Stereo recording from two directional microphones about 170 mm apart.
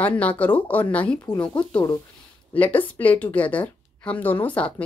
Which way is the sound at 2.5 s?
10° left (ahead or behind).